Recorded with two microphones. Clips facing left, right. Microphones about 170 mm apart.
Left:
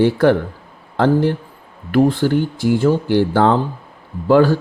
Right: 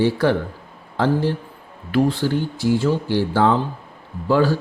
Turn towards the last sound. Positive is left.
turn(degrees=55)  # may be behind; listen again after turning